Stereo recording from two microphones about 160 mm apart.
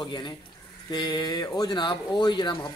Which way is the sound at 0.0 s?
30° left (ahead or behind).